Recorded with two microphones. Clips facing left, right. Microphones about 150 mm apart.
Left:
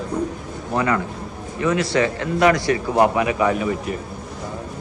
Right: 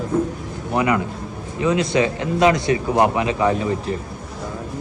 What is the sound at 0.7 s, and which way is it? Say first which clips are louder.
A man's voice: right 1 dB; 15° right (ahead or behind).